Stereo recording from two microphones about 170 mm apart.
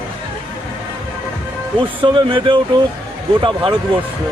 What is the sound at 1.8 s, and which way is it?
Speech, 30° right (ahead or behind).